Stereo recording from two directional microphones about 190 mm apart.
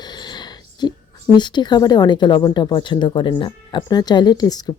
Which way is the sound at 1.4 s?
25° left (ahead or behind).